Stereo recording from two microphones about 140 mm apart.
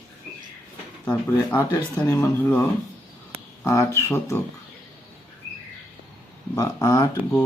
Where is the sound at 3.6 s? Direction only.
20° left (ahead or behind).